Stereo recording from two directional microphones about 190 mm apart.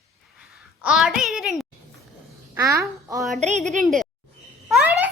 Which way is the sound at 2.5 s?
15° right (ahead or behind).